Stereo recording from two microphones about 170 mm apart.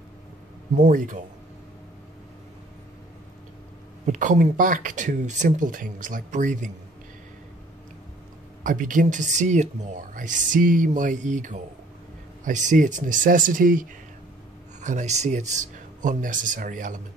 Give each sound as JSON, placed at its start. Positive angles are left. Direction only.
{"t": 0.7, "sound": "speech", "side_deg": -50}
{"t": 4.0, "sound": "speech", "side_deg": -45}
{"t": 8.6, "sound": "speech", "side_deg": -50}